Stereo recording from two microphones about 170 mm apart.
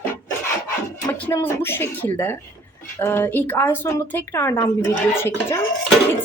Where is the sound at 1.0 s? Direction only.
15° left (ahead or behind).